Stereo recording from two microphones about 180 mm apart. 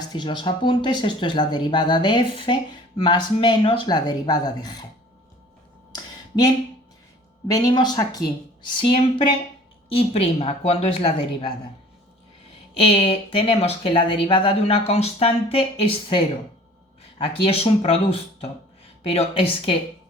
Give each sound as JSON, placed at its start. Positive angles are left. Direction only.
{"t": 0.1, "sound": "speech", "side_deg": 25}
{"t": 5.9, "sound": "a sound", "side_deg": 20}
{"t": 7.4, "sound": "speech", "side_deg": 20}
{"t": 12.7, "sound": "speech", "side_deg": 30}